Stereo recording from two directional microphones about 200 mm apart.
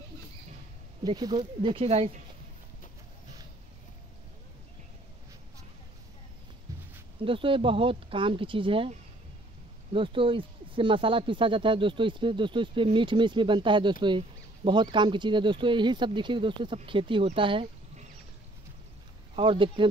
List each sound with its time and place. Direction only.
1.0 s speech: 20° right (ahead or behind)
6.7 s a sound: 15° right (ahead or behind)
7.2 s speech: 25° right (ahead or behind)
9.9 s speech: 25° right (ahead or behind)
19.3 s speech: 25° right (ahead or behind)